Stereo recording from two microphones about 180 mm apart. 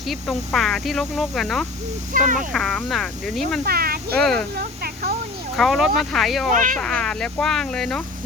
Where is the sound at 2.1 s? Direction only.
50° right (ahead or behind).